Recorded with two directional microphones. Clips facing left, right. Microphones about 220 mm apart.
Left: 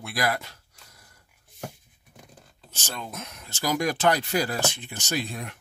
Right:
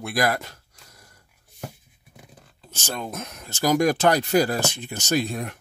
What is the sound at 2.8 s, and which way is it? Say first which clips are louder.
Speech: right 5 dB; 45° right (ahead or behind).